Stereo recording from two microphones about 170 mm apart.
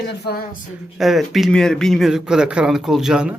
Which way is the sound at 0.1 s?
70° left (ahead or behind).